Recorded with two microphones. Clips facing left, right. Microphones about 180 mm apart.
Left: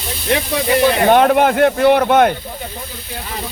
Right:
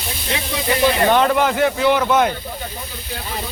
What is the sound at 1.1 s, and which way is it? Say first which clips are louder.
Speech: left 4 dB; 55° left (ahead or behind).